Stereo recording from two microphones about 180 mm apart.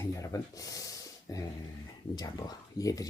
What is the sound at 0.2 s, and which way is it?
Speech, 20° left (ahead or behind).